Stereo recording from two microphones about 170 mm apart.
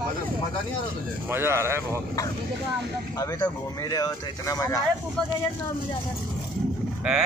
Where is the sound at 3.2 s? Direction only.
15° left (ahead or behind).